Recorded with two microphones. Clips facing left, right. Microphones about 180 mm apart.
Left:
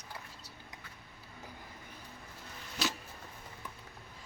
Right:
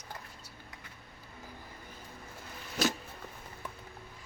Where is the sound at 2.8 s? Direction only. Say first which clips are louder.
Right 6 dB; 45° right (ahead or behind).